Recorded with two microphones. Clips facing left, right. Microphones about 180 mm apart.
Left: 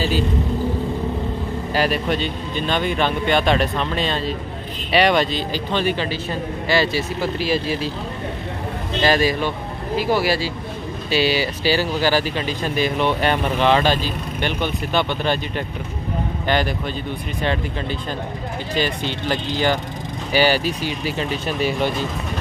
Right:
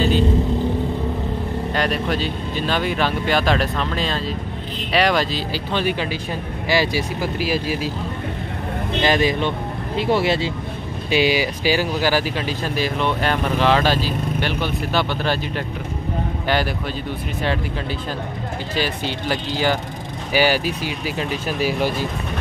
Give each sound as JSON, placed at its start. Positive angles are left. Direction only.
{"t": 1.7, "sound": "speech", "side_deg": 5}
{"t": 9.0, "sound": "speech", "side_deg": -20}
{"t": 18.8, "sound": "speech", "side_deg": -5}